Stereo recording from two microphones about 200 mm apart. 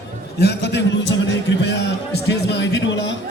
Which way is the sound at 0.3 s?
55° left (ahead or behind).